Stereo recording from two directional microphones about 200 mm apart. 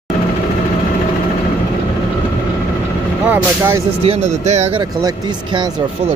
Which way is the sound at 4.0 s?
30° right (ahead or behind).